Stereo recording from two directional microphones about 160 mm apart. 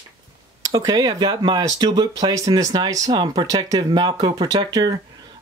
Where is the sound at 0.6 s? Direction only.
25° right (ahead or behind).